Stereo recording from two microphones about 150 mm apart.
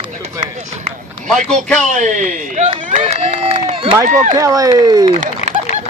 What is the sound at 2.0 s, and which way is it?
Run, 55° right (ahead or behind).